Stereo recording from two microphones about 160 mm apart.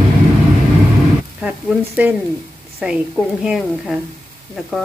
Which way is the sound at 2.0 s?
10° right (ahead or behind).